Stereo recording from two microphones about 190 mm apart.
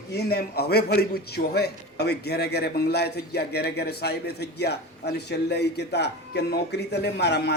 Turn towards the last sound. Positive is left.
turn(degrees=60)  # may be behind; listen again after turning